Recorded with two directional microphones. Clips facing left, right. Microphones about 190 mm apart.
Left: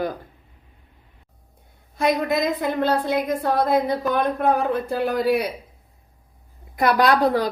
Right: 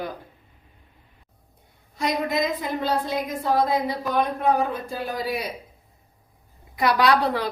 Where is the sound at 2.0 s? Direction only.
55° left (ahead or behind).